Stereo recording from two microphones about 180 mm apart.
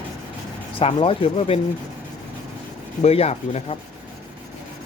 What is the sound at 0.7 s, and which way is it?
Speech, 30° left (ahead or behind).